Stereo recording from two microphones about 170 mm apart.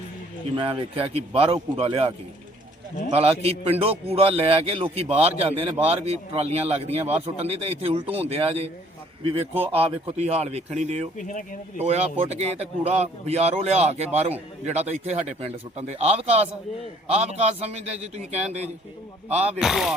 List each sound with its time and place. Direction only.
0.5 s a man's voice: 30° right (ahead or behind)
3.2 s a man's voice: 35° right (ahead or behind)
19.5 s speech: 5° right (ahead or behind)